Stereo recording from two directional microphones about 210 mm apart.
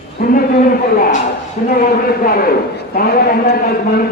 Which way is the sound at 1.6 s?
40° left (ahead or behind).